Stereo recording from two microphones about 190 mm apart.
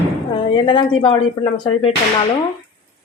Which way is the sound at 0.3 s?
25° left (ahead or behind).